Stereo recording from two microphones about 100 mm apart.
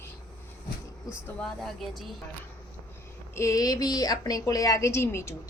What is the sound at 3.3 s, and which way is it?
A woman's voice, 35° left (ahead or behind).